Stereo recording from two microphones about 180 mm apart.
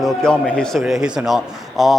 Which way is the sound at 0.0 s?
5° left (ahead or behind).